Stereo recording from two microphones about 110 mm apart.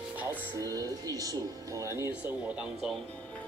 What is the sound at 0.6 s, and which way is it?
Speech, 30° right (ahead or behind).